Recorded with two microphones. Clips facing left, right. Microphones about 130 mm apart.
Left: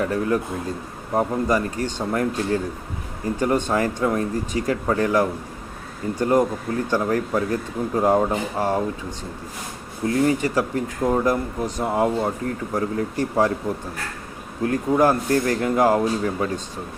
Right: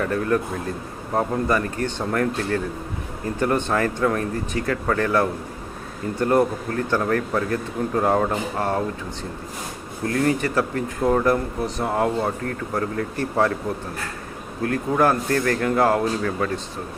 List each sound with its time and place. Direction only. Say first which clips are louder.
0.0 s speech: even; 20° left (ahead or behind)
10.1 s speech: left 2 dB; 20° left (ahead or behind)
14.7 s speech: left 1 dB; 20° left (ahead or behind)